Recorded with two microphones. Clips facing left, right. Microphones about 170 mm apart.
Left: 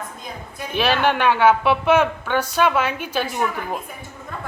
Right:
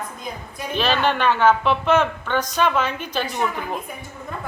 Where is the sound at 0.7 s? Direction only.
10° left (ahead or behind).